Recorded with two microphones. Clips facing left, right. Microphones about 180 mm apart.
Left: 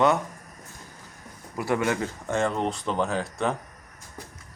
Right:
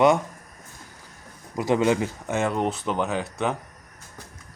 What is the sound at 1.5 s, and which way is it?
Speech, 20° right (ahead or behind).